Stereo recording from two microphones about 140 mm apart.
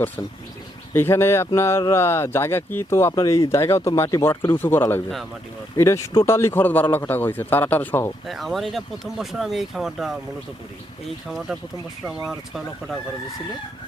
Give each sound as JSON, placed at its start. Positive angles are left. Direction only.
{"t": 0.9, "sound": "a man's voice", "side_deg": 15}
{"t": 8.3, "sound": "speech", "side_deg": 0}
{"t": 11.3, "sound": "speech", "side_deg": 0}